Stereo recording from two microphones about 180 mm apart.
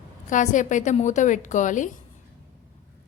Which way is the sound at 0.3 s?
45° left (ahead or behind).